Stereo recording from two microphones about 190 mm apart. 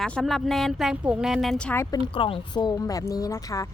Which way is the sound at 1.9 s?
25° left (ahead or behind).